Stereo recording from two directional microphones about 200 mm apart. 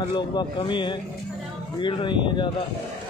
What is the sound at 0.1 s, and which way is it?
Speech, 20° left (ahead or behind).